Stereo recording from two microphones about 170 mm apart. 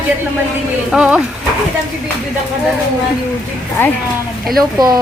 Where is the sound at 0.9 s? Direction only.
5° right (ahead or behind).